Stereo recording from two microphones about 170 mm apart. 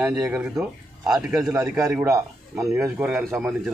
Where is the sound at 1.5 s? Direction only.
20° right (ahead or behind).